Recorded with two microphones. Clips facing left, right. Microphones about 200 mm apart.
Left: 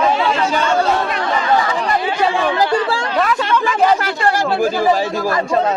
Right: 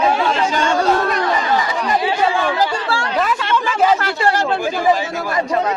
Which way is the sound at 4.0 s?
10° left (ahead or behind).